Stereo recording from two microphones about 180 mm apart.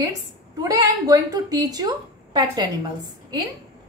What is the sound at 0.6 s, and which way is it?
A woman's voice, 20° right (ahead or behind).